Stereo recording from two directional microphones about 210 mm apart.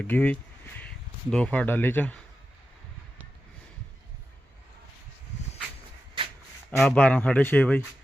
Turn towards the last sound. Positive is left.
turn(degrees=10)  # may be behind; listen again after turning